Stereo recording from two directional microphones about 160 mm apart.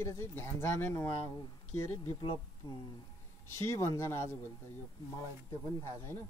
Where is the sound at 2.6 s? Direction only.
25° left (ahead or behind).